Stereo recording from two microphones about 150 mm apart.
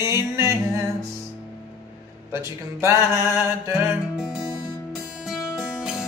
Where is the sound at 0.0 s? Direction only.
20° right (ahead or behind).